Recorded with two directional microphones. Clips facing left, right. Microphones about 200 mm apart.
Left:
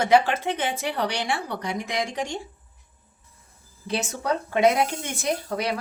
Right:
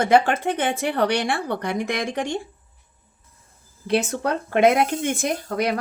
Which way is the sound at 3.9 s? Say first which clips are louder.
Right 4 dB; 55° right (ahead or behind).